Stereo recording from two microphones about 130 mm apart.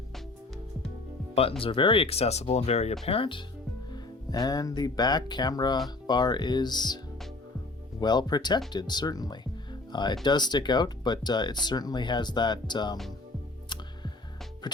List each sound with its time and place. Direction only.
1.6 s speech: 40° left (ahead or behind)
3.1 s speech: 40° left (ahead or behind)
3.9 s speech: 30° left (ahead or behind)
8.0 s speech: 35° left (ahead or behind)